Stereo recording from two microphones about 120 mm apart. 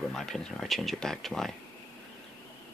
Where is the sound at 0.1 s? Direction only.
5° left (ahead or behind).